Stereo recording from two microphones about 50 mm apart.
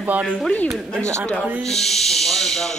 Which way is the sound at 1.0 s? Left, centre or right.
Right.